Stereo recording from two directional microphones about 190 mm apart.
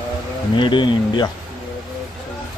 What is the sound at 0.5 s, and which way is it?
Speech, 25° left (ahead or behind).